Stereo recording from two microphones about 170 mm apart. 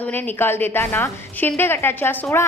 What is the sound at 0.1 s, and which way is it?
A woman's voice, 10° left (ahead or behind).